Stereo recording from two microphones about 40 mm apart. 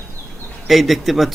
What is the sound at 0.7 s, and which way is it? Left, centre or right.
Speech, centre.